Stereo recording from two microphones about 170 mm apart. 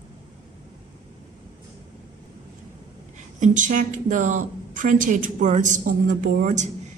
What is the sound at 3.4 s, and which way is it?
A woman's voice, 50° right (ahead or behind).